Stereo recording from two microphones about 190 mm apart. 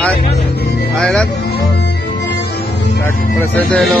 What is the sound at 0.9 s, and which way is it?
Speech, 5° left (ahead or behind).